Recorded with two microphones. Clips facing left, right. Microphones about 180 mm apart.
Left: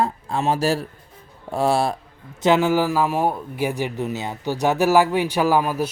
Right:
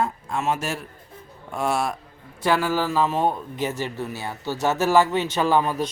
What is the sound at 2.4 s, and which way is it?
A man's voice, 20° left (ahead or behind).